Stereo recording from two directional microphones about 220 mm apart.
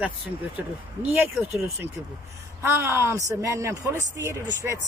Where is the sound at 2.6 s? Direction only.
10° right (ahead or behind).